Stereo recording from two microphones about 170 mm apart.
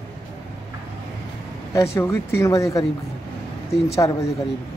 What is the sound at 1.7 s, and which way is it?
Speech, 15° left (ahead or behind).